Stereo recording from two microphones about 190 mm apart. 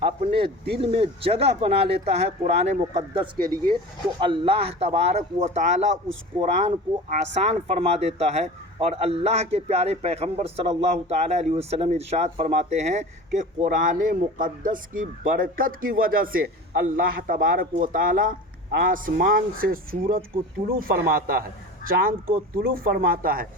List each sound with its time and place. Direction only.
0.0 s speech: 30° right (ahead or behind)
3.4 s speech: 20° right (ahead or behind); by 23.5 s 45° right (ahead or behind)